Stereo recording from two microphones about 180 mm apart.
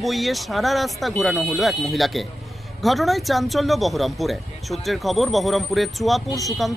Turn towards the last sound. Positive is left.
turn(degrees=0)  # may be behind; listen again after turning